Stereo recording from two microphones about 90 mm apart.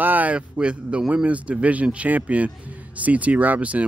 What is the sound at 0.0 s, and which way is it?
Speech, 20° right (ahead or behind).